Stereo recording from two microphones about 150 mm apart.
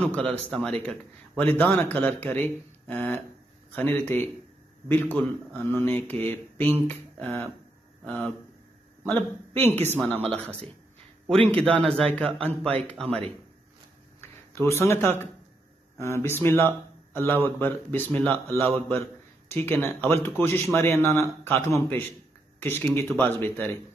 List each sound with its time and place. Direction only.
0.0 s speech: 10° left (ahead or behind)
11.3 s a man's voice: 40° right (ahead or behind)
11.6 s speech: 5° left (ahead or behind)
14.5 s speech: 15° left (ahead or behind)
19.5 s speech: 15° left (ahead or behind)